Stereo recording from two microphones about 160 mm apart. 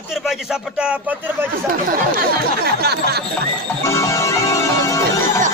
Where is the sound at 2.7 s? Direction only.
80° right.